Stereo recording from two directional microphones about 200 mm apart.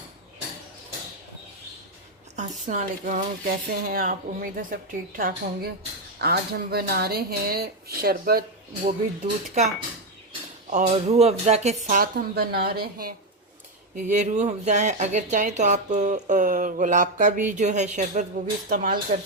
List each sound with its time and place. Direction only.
2.3 s speech: 35° right (ahead or behind)
10.7 s speech: 35° right (ahead or behind)
13.9 s speech: 35° right (ahead or behind)
18.7 s speech: 45° right (ahead or behind)